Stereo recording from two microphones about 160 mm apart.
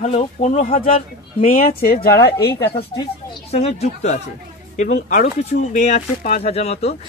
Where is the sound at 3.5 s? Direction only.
40° left (ahead or behind).